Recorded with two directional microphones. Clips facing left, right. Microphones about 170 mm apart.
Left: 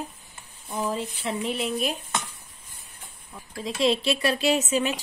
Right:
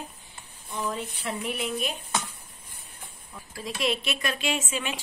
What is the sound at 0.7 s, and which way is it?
Speech, 30° left (ahead or behind).